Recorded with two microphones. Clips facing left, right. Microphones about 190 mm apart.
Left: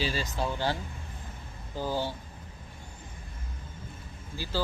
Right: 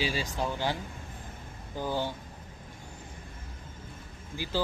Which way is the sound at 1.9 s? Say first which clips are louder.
Even; 10° left (ahead or behind).